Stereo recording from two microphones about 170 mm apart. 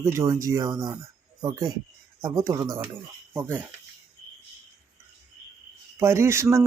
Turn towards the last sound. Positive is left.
turn(degrees=-15)  # may be behind; listen again after turning